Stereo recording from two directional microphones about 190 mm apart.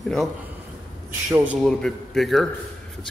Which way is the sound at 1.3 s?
5° right (ahead or behind).